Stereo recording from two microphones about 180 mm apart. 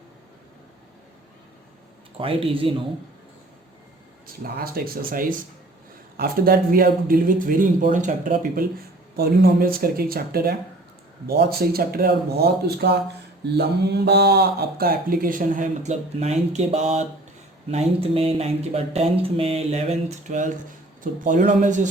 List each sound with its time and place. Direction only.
2.1 s speech: 30° right (ahead or behind)
4.4 s speech: 60° right (ahead or behind)